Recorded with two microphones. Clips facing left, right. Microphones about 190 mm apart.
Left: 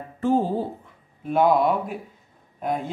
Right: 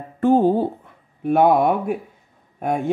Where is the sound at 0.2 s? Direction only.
60° right (ahead or behind).